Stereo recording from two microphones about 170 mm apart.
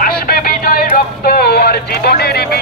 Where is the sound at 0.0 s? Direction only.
60° left (ahead or behind).